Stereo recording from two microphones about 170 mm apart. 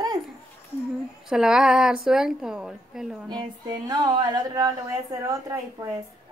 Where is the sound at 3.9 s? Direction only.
25° right (ahead or behind).